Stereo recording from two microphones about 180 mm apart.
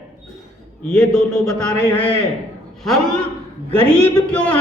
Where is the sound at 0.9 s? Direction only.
Centre (ahead or behind).